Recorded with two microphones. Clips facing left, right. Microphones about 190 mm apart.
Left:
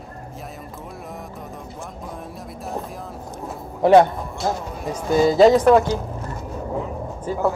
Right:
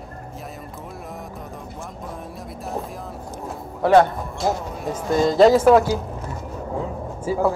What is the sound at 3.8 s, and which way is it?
Speech, 15° left (ahead or behind).